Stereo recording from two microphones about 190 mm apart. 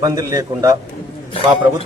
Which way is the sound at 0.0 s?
20° right (ahead or behind).